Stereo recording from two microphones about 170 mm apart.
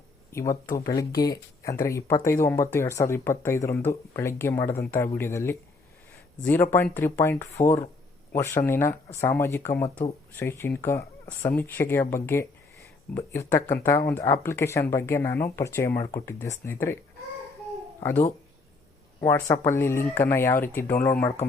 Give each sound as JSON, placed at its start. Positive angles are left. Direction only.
{"t": 0.9, "sound": "speech", "side_deg": 20}
{"t": 19.2, "sound": "speech", "side_deg": 15}